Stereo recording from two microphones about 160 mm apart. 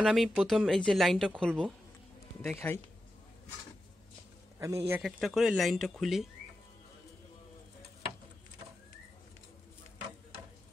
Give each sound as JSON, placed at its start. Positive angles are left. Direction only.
{"t": 0.0, "sound": "a woman's voice", "side_deg": 0}
{"t": 4.6, "sound": "a man's voice", "side_deg": -20}
{"t": 5.0, "sound": "a woman's voice", "side_deg": 0}